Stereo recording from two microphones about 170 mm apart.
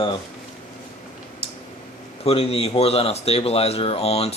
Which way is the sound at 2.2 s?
35° left (ahead or behind).